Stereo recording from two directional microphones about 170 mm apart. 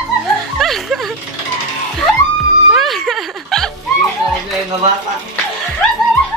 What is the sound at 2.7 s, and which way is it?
Music, centre (ahead or behind).